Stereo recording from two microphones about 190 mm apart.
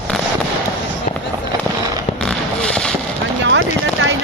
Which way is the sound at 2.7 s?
5° left (ahead or behind).